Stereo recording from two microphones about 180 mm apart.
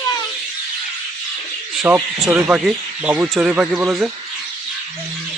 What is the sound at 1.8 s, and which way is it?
Speech, 20° right (ahead or behind).